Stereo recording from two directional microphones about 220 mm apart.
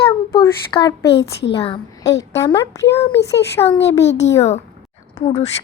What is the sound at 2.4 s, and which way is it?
A child's voice, 15° left (ahead or behind).